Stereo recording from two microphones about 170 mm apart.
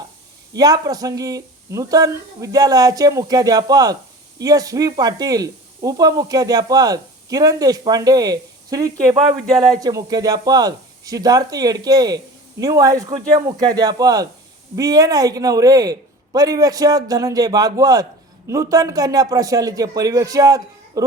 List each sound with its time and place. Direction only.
0.5 s speech: 20° right (ahead or behind)